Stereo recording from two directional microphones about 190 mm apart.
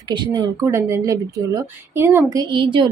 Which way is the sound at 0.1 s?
25° right (ahead or behind).